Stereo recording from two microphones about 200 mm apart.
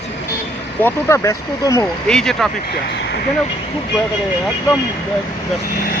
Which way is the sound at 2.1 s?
5° left (ahead or behind).